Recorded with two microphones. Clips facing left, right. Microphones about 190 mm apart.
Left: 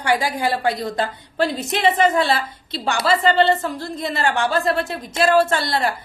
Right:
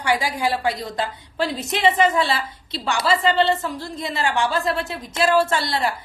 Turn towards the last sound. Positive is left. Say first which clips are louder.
# left 2 dB
turn(degrees=55)  # may be behind; listen again after turning